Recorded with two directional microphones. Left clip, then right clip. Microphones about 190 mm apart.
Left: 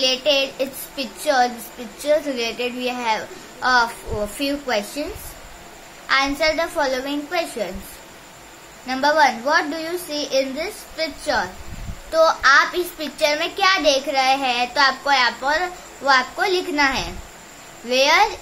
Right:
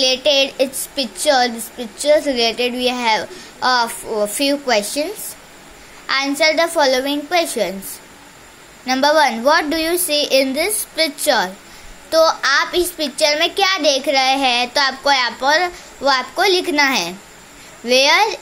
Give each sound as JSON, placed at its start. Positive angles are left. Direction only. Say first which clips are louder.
{"t": 0.0, "sound": "a woman's voice", "louder": "right 4 dB", "side_deg": -35}
{"t": 6.0, "sound": "a child's voice", "louder": "right 2 dB", "side_deg": -30}
{"t": 8.8, "sound": "a child's voice", "louder": "right 3 dB", "side_deg": -35}